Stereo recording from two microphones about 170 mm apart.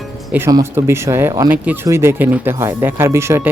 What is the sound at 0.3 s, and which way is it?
Speech, 15° right (ahead or behind).